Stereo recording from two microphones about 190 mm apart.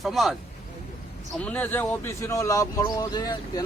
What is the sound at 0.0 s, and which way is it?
Speech, centre (ahead or behind).